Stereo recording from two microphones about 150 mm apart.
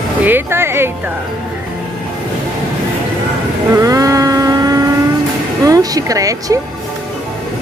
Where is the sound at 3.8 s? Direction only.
20° right (ahead or behind).